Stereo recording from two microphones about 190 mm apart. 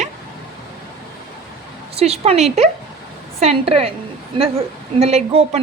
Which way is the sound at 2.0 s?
35° right (ahead or behind).